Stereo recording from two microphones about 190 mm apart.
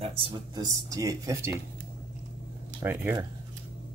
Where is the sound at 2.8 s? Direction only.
10° right (ahead or behind).